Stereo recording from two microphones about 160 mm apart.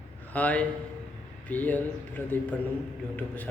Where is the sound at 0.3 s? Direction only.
10° left (ahead or behind).